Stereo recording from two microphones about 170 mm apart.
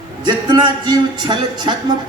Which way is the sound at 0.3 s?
25° right (ahead or behind).